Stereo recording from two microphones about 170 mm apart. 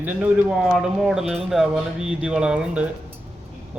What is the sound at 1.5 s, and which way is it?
A man's voice, centre (ahead or behind).